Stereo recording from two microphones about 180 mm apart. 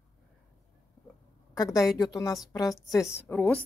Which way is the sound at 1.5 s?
20° left (ahead or behind).